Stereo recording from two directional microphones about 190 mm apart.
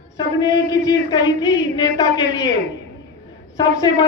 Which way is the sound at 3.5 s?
20° left (ahead or behind).